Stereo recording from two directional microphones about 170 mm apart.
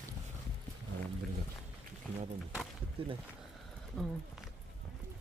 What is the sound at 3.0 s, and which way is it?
Speech, 35° right (ahead or behind).